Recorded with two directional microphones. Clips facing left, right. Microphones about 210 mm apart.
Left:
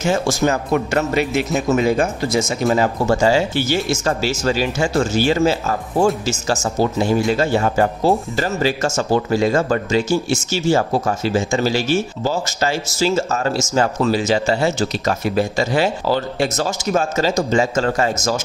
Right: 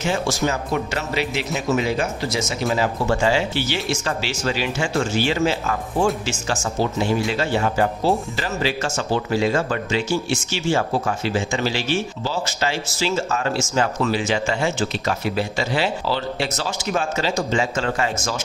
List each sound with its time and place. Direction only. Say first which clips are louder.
0.0 s speech: left 4 dB; 45° left (ahead or behind)